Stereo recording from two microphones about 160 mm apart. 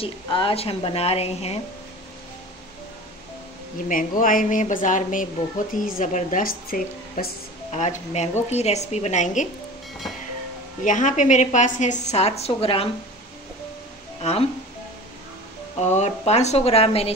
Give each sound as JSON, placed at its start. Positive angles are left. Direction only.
{"t": 0.0, "sound": "a woman's voice", "side_deg": 35}
{"t": 3.9, "sound": "a woman's voice", "side_deg": 60}
{"t": 7.7, "sound": "a woman's voice", "side_deg": 45}
{"t": 10.8, "sound": "a woman's voice", "side_deg": 50}
{"t": 15.8, "sound": "a woman's voice", "side_deg": 45}